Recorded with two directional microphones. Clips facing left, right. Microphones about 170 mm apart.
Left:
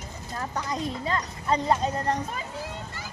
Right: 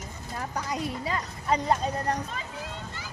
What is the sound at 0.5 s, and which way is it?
A woman's voice, 10° right (ahead or behind).